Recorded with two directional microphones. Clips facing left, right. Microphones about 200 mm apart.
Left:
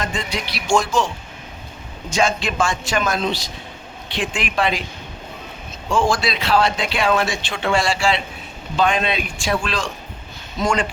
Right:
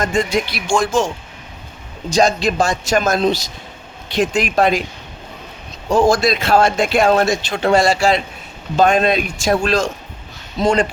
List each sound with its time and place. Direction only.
0.0 s speech: 45° right (ahead or behind)
2.0 s a man's voice: 40° right (ahead or behind)
5.9 s a man's voice: 40° right (ahead or behind)